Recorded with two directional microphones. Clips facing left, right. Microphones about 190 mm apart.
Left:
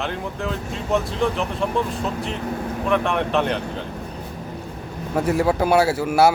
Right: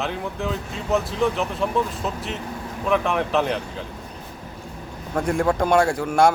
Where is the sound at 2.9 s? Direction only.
Centre (ahead or behind).